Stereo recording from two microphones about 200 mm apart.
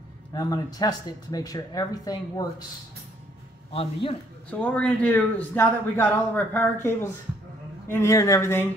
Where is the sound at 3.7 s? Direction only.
30° left (ahead or behind).